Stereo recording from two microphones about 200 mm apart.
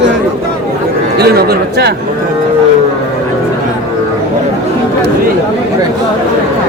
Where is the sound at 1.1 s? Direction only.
50° right (ahead or behind).